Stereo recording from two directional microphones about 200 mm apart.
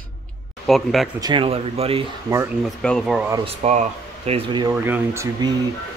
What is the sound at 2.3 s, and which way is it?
Speech, 15° right (ahead or behind).